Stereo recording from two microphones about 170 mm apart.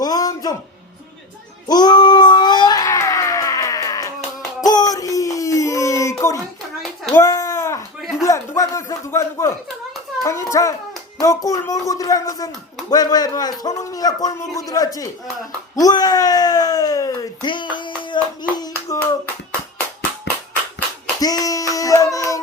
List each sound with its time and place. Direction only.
0.0 s a sound: 20° left (ahead or behind)
1.6 s cat: 25° left (ahead or behind)
4.6 s a sound: 20° left (ahead or behind)
8.2 s a man's voice: 20° left (ahead or behind)
18.5 s hands: 25° left (ahead or behind)
21.2 s dog: 20° left (ahead or behind)